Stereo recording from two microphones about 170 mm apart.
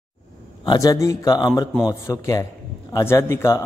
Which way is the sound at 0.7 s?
20° left (ahead or behind).